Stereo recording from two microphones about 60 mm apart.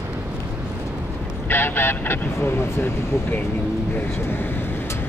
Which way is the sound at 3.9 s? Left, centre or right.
Left.